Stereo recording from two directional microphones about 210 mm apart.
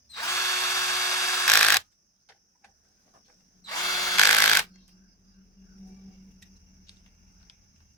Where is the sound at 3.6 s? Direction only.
15° left (ahead or behind).